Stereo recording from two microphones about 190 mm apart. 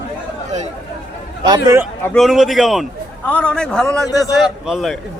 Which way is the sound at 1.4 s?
20° right (ahead or behind).